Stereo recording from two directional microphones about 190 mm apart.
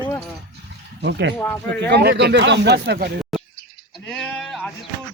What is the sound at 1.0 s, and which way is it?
Speech, 65° right (ahead or behind).